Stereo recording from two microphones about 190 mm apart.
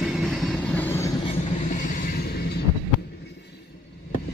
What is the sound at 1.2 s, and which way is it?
Train, 35° left (ahead or behind).